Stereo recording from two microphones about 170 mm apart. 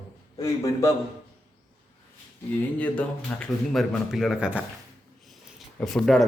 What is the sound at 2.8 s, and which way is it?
Speech, 5° left (ahead or behind).